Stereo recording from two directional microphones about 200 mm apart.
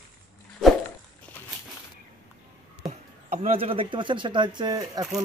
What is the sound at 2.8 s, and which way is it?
A man's voice, 35° right (ahead or behind).